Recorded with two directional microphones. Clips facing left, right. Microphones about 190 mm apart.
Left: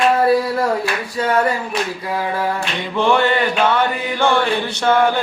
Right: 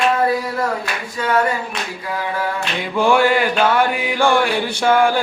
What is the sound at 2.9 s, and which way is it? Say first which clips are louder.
Mantra: right 1 dB; 10° right (ahead or behind).